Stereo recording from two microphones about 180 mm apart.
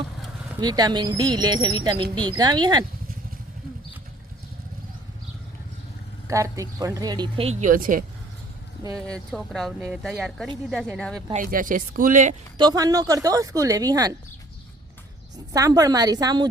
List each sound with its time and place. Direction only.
0.6 s speech: 20° right (ahead or behind)
6.2 s speech: 15° right (ahead or behind)
7.6 s speech: 50° right (ahead or behind)
9.0 s speech: 5° left (ahead or behind)
11.3 s speech: 50° right (ahead or behind)
12.5 s speech: 20° right (ahead or behind)
15.5 s speech: 20° right (ahead or behind)